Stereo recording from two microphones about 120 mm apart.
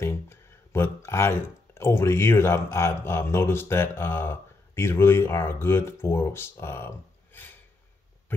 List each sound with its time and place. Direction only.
0.0 s speech: 20° left (ahead or behind)